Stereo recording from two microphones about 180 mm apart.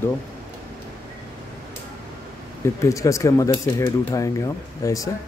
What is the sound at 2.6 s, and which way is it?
Speech, 15° left (ahead or behind).